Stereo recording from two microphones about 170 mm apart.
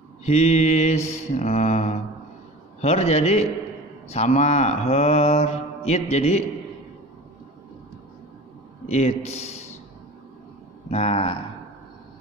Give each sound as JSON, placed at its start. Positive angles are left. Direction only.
{"t": 0.2, "sound": "mantra", "side_deg": 40}
{"t": 8.8, "sound": "mantra", "side_deg": 40}
{"t": 10.9, "sound": "mantra", "side_deg": 40}